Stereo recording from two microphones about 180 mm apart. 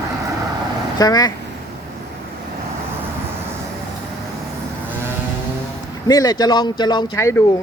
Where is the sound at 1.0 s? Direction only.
20° left (ahead or behind).